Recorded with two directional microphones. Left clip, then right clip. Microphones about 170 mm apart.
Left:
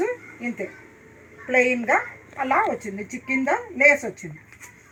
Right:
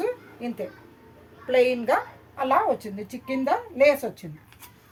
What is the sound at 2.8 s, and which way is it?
Speech, 25° right (ahead or behind).